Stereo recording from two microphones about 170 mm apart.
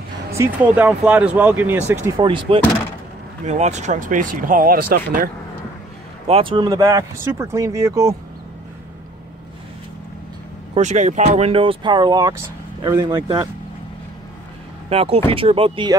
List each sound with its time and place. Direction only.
0.3 s speech: 10° right (ahead or behind)
2.2 s speech: 30° right (ahead or behind)
3.4 s speech: 45° right (ahead or behind); by 5.3 s 60° right (ahead or behind)
6.2 s speech: 35° right (ahead or behind)
10.7 s speech: 45° right (ahead or behind); by 13.5 s 25° right (ahead or behind)
14.9 s speech: 35° right (ahead or behind)